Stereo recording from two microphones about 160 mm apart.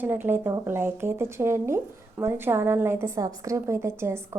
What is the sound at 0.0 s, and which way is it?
Speech, 10° right (ahead or behind).